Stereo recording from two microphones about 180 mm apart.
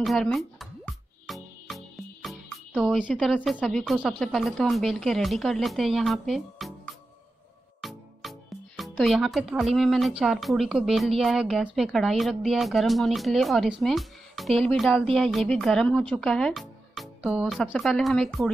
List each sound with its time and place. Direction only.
0.0 s music: centre (ahead or behind)
2.2 s speech: centre (ahead or behind)
7.8 s speech: centre (ahead or behind)
13.8 s music: centre (ahead or behind)
14.6 s speech: centre (ahead or behind)